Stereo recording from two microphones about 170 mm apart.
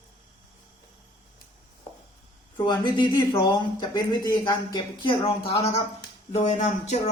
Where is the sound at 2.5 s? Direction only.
25° left (ahead or behind).